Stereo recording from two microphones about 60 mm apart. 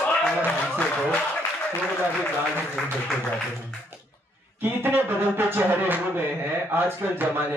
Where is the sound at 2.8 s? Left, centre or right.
Centre.